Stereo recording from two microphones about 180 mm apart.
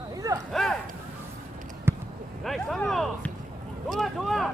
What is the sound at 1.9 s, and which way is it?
Basketball bounce, 15° right (ahead or behind).